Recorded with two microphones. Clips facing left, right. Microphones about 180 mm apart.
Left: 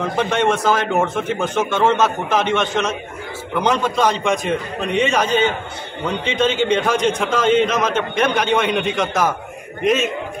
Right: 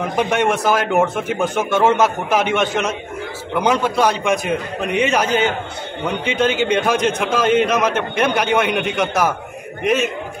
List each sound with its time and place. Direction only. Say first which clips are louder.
0.0 s a man's voice: even; 15° right (ahead or behind)